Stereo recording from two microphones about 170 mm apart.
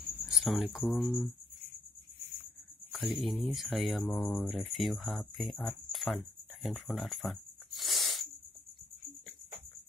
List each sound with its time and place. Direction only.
0.3 s speech: centre (ahead or behind)
3.1 s speech: centre (ahead or behind)